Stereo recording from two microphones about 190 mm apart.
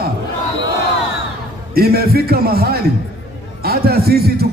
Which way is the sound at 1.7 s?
55° right (ahead or behind).